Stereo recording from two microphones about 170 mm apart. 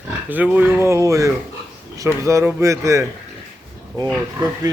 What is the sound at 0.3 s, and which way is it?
Speech, 10° right (ahead or behind).